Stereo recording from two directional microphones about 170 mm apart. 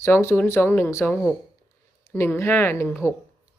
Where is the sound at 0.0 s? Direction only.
15° left (ahead or behind).